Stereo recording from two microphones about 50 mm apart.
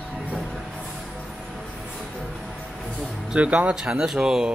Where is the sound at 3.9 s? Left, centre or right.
Centre.